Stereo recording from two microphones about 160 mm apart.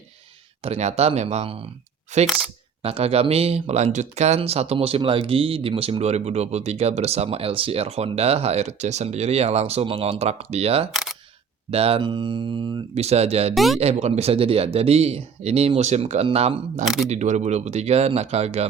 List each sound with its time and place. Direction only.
0.6 s speech: 45° right (ahead or behind)
2.2 s speech: 5° right (ahead or behind)
2.8 s speech: 40° right (ahead or behind)
10.9 s single-lens reflex camera: 5° right (ahead or behind)
11.7 s speech: 40° right (ahead or behind)
13.5 s speech: centre (ahead or behind)
13.7 s speech: 40° right (ahead or behind)
16.8 s speech: 5° right (ahead or behind)
17.1 s speech: 45° right (ahead or behind)